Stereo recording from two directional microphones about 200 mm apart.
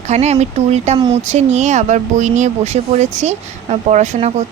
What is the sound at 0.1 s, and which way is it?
Speech, 35° right (ahead or behind).